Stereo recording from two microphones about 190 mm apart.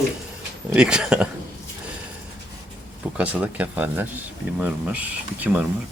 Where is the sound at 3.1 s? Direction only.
5° right (ahead or behind).